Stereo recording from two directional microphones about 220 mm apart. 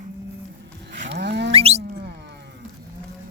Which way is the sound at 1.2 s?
50° right (ahead or behind).